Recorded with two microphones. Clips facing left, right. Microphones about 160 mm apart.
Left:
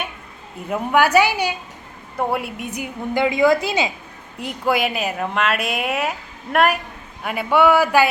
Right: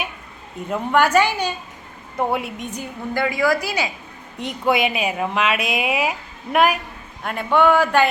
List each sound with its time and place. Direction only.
0.7 s a woman's voice: 10° left (ahead or behind)
4.4 s a woman's voice: centre (ahead or behind)